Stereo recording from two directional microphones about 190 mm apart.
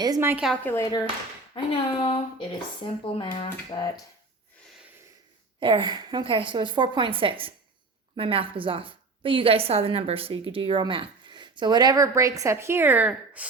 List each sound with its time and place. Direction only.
0.0 s a woman's voice: 15° right (ahead or behind)
0.4 s a woman's voice: 5° left (ahead or behind)
1.5 s speech: 30° left (ahead or behind)
5.5 s a woman's voice: 25° right (ahead or behind); by 13.5 s 5° right (ahead or behind)